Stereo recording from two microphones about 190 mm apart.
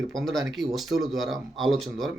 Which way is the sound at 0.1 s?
Centre (ahead or behind).